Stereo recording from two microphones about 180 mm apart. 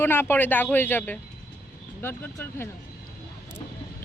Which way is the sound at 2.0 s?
10° left (ahead or behind).